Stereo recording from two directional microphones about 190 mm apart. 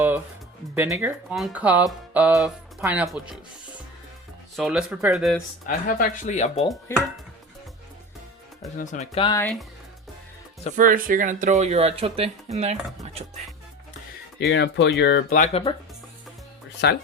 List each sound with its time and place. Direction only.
0.8 s speech: 10° right (ahead or behind)
4.5 s speech: centre (ahead or behind)
5.6 s speech: 45° left (ahead or behind)
6.9 s speech: 15° left (ahead or behind)
8.8 s speech: 40° left (ahead or behind)
10.8 s speech: 45° right (ahead or behind)
14.5 s speech: 65° left (ahead or behind)
15.3 s speech: 35° left (ahead or behind)
16.8 s speech: 65° left (ahead or behind)